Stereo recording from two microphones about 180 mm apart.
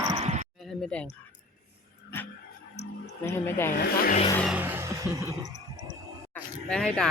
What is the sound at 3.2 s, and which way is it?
Speech, 15° left (ahead or behind).